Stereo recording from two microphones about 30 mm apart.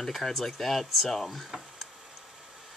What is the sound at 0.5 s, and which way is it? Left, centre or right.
Speech, centre.